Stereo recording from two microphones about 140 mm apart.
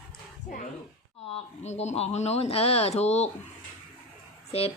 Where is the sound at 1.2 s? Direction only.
45° left (ahead or behind).